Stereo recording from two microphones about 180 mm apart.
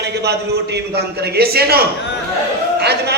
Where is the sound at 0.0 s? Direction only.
65° right (ahead or behind).